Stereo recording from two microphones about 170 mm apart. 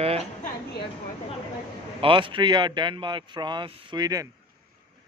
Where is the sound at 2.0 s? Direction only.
30° right (ahead or behind).